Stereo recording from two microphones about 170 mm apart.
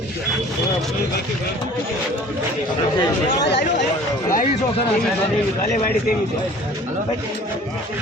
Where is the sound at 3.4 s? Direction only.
85° left.